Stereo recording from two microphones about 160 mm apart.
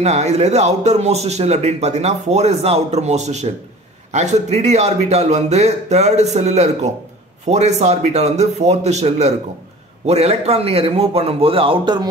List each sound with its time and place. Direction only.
0.0 s a man's voice: 45° right (ahead or behind)